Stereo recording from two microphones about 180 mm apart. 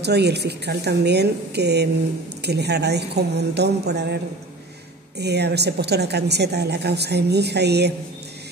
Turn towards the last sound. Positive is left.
turn(degrees=-65)  # may be behind; listen again after turning